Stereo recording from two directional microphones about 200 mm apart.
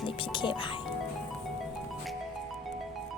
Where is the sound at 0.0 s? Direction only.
25° left (ahead or behind).